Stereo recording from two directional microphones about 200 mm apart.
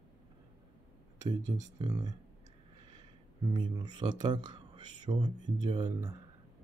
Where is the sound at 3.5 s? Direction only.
20° right (ahead or behind).